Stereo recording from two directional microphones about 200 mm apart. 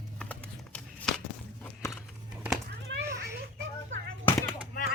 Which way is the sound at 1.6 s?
10° left (ahead or behind).